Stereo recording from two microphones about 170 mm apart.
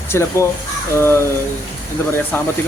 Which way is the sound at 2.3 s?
10° left (ahead or behind).